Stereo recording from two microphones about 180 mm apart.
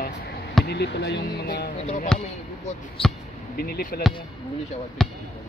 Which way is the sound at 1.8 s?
40° left (ahead or behind).